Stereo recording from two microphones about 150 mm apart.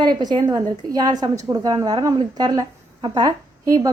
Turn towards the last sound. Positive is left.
turn(degrees=-25)  # may be behind; listen again after turning